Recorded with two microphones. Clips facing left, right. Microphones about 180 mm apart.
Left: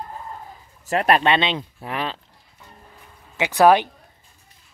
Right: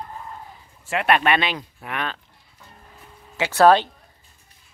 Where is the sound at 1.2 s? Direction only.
25° left (ahead or behind).